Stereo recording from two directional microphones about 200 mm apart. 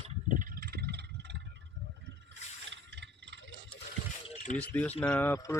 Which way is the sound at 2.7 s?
60° right (ahead or behind).